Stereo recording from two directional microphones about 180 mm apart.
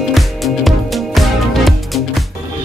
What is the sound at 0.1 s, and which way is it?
Music, centre (ahead or behind).